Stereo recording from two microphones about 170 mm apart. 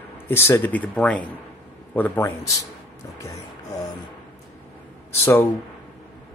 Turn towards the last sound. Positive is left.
turn(degrees=15)  # may be behind; listen again after turning